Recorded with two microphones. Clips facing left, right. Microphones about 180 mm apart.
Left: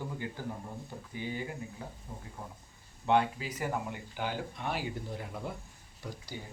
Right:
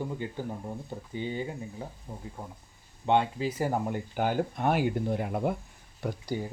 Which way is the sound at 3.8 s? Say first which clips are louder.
Right 8 dB; 45° right (ahead or behind).